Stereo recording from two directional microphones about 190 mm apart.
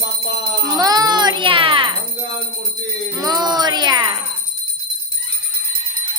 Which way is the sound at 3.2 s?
20° right (ahead or behind).